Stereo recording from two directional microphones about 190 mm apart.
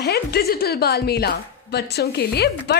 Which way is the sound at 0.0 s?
55° left (ahead or behind).